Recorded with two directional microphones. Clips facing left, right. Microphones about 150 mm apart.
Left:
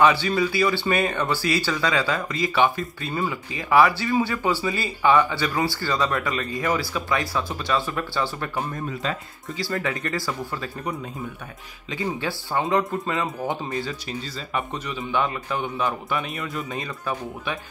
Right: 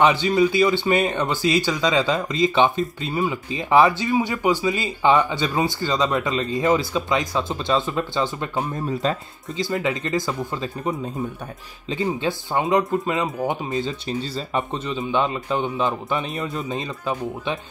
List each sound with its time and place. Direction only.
0.0 s speech: 20° right (ahead or behind)
9.6 s speech: 20° right (ahead or behind)